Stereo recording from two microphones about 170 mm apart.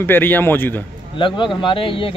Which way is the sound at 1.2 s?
30° left (ahead or behind).